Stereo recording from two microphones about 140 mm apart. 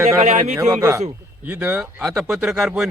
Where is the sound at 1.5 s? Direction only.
10° right (ahead or behind).